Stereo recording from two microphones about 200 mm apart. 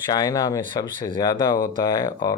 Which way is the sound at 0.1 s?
20° left (ahead or behind).